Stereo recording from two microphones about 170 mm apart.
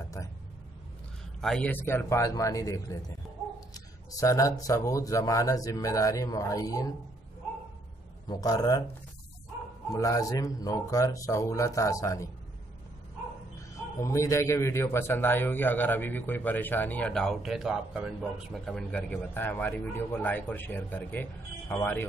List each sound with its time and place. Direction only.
1.4 s a man's voice: 5° left (ahead or behind)
8.3 s speech: 20° left (ahead or behind)
9.9 s speech: 20° left (ahead or behind)
13.6 s a man's voice: 15° left (ahead or behind)